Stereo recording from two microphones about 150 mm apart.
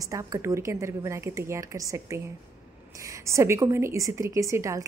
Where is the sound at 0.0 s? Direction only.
20° right (ahead or behind).